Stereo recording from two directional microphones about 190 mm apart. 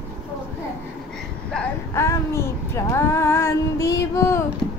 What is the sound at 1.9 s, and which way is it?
Child singing, 15° left (ahead or behind).